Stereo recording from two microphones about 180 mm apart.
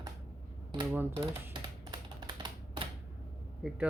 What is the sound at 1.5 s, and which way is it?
Typing, 25° right (ahead or behind).